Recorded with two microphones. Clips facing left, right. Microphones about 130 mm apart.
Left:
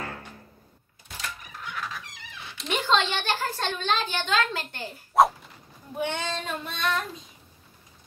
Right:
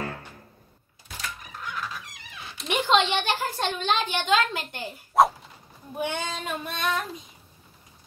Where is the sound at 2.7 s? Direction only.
15° right (ahead or behind).